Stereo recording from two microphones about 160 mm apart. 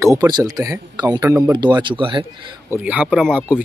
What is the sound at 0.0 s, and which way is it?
Speech, 20° right (ahead or behind).